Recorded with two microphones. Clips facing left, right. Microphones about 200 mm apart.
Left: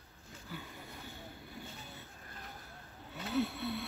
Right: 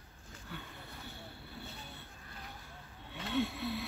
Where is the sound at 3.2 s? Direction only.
5° left (ahead or behind).